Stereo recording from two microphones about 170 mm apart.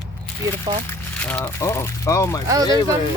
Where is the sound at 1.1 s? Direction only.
10° left (ahead or behind).